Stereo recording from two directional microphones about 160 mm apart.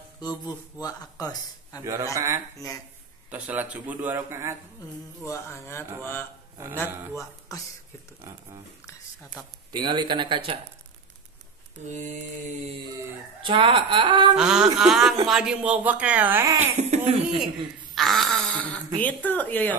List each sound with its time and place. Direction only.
0.2 s speech: 25° left (ahead or behind)
2.1 s speech: 20° right (ahead or behind)
5.2 s speech: 15° left (ahead or behind)
9.7 s speech: 30° right (ahead or behind)
11.9 s mantra: 50° right (ahead or behind)
13.4 s speech: 30° right (ahead or behind)
14.3 s speech: 5° right (ahead or behind)
16.7 s speech: 40° right (ahead or behind)
17.9 s a sound: centre (ahead or behind)
18.9 s speech: 10° left (ahead or behind)